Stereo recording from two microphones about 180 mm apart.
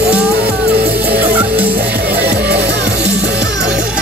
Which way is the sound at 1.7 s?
60° right (ahead or behind).